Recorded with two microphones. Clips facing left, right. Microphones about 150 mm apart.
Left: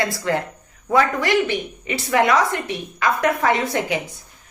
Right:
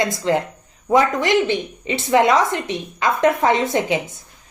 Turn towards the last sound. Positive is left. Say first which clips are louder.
# right 3 dB
turn(degrees=-20)  # may be behind; listen again after turning